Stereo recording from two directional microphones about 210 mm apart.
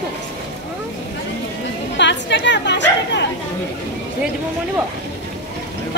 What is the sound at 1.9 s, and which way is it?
A woman's voice, 55° left (ahead or behind).